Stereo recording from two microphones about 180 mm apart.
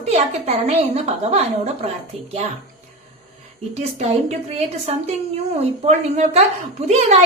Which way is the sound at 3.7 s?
40° right (ahead or behind).